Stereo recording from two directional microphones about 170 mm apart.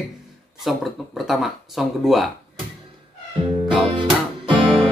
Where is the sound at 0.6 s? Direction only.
Centre (ahead or behind).